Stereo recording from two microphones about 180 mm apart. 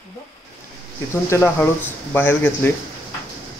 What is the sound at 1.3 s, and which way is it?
Speech, 15° left (ahead or behind).